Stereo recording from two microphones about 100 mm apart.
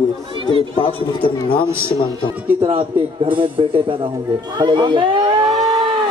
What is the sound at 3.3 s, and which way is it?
Speech, 60° right (ahead or behind).